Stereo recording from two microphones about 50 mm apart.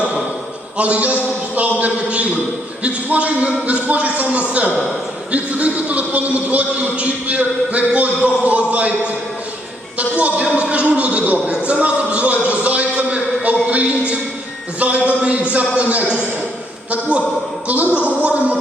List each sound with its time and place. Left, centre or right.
0.8 s a man's voice: right
13.7 s a sound: right
14.8 s a man's voice: right